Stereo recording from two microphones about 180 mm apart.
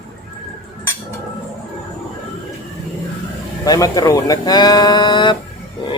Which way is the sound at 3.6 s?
20° left (ahead or behind).